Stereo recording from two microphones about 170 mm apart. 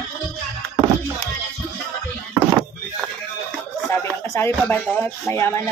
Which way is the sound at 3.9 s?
15° left (ahead or behind).